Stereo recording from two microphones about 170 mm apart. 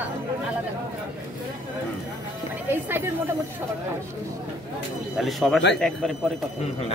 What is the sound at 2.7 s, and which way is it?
Speech, 15° right (ahead or behind).